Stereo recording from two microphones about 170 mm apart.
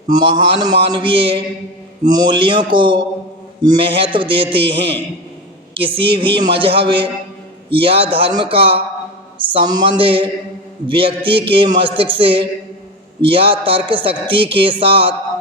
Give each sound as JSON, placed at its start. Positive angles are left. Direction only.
{"t": 0.1, "sound": "mantra", "side_deg": -25}
{"t": 3.6, "sound": "a man's voice", "side_deg": -30}